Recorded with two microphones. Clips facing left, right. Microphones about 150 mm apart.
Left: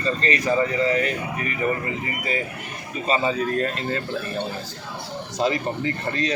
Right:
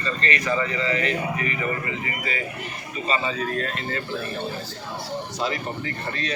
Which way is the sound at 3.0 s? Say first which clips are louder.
Left 3 dB; 40° left (ahead or behind).